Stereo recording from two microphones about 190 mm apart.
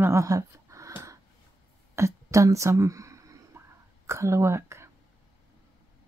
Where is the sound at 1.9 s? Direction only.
15° right (ahead or behind).